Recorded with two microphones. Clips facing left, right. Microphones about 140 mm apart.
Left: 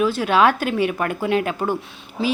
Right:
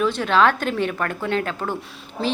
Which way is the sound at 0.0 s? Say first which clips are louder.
Left 1 dB; 10° left (ahead or behind).